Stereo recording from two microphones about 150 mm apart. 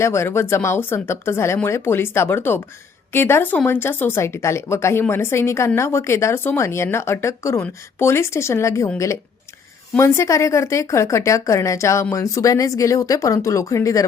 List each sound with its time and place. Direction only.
0.0 s speech: 20° left (ahead or behind)
10.0 s speech: 20° left (ahead or behind)